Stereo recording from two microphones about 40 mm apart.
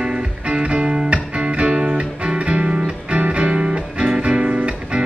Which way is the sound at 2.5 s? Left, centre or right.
Right.